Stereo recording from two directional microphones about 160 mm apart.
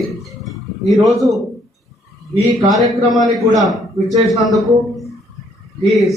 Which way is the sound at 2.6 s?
Centre (ahead or behind).